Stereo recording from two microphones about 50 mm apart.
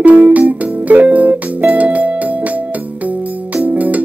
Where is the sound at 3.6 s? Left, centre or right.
Right.